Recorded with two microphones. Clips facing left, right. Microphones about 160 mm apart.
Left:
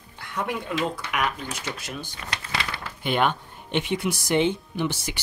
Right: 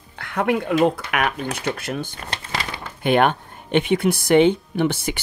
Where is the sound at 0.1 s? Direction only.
70° right (ahead or behind).